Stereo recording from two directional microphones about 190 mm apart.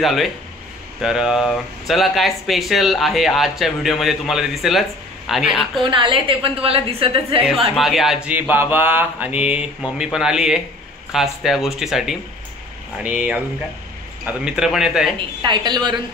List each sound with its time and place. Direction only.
0.0 s speech: centre (ahead or behind)
5.9 s a woman's voice: 25° right (ahead or behind)
7.7 s speech: centre (ahead or behind)
15.1 s a woman's voice: 25° right (ahead or behind)